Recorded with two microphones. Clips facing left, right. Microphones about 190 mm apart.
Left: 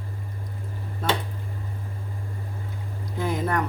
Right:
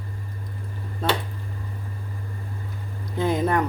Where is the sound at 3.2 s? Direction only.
25° right (ahead or behind).